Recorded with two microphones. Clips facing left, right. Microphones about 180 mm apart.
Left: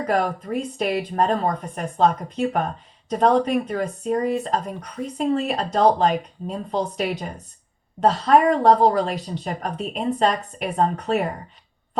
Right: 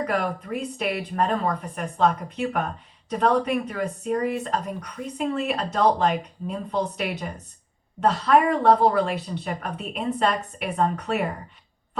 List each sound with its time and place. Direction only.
0.1 s speech: 40° left (ahead or behind)